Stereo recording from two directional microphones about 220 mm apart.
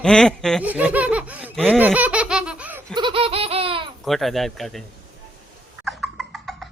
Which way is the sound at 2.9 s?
25° right (ahead or behind).